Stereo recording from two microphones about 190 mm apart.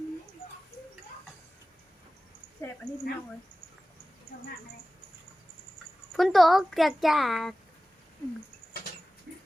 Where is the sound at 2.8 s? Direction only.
55° right (ahead or behind).